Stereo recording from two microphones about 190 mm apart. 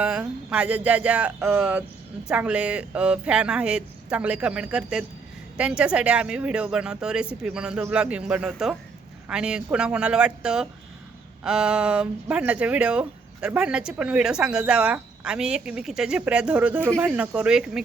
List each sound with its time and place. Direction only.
0.0 s speech: 5° right (ahead or behind)